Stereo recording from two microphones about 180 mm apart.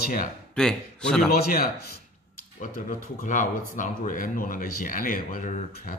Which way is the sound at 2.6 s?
45° left (ahead or behind).